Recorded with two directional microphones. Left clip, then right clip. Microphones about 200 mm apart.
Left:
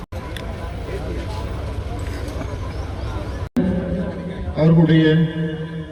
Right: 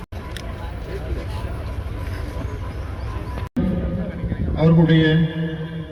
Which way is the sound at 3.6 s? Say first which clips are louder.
Left 4 dB; centre (ahead or behind).